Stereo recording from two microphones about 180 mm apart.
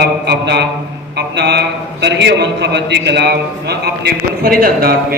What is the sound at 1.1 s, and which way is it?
A man's voice, 70° right (ahead or behind).